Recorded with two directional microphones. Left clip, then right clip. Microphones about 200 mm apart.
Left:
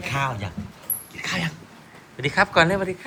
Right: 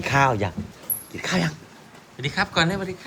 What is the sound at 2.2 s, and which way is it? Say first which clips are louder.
Speech: left 4 dB; 5° right (ahead or behind).